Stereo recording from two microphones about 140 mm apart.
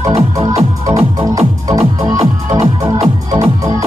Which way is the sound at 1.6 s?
25° right (ahead or behind).